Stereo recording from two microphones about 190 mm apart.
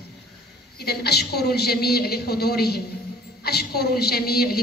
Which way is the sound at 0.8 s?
60° left (ahead or behind).